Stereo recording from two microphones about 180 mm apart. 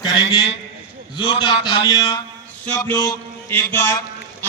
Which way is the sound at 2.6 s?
10° left (ahead or behind).